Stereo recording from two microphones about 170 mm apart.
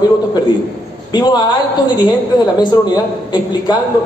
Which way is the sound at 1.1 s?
25° left (ahead or behind).